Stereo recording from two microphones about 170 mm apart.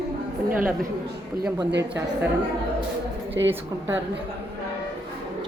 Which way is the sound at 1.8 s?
15° right (ahead or behind).